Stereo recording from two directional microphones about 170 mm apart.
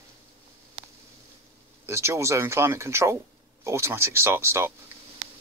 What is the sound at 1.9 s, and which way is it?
Speech, 15° right (ahead or behind).